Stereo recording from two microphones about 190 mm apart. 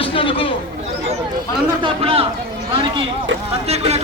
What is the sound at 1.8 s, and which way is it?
Speech, 30° right (ahead or behind).